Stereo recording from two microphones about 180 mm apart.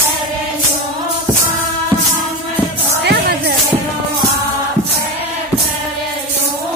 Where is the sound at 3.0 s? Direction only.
65° right (ahead or behind).